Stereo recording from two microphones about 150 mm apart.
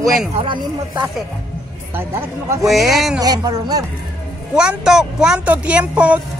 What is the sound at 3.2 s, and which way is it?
Speech, 25° right (ahead or behind).